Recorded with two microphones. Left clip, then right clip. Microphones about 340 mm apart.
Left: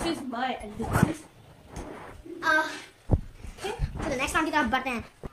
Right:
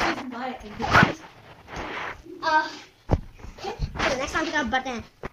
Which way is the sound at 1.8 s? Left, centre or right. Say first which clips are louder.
Right 10 dB; right.